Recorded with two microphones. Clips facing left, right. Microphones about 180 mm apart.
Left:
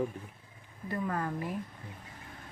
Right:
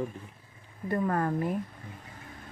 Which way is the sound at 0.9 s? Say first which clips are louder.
Right 6 dB; 50° right (ahead or behind).